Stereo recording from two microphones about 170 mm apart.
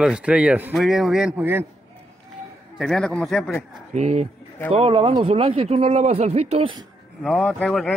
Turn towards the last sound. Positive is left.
turn(degrees=5)  # may be behind; listen again after turning